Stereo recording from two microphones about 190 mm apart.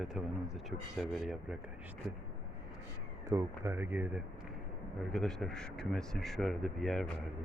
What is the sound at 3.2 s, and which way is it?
Speech, 15° right (ahead or behind).